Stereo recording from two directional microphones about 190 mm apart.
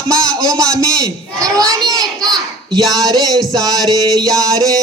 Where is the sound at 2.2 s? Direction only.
Centre (ahead or behind).